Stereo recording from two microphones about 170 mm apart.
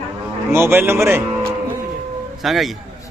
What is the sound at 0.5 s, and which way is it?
Speech, 15° right (ahead or behind).